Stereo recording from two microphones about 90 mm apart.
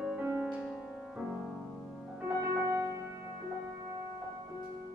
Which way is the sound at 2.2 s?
35° right (ahead or behind).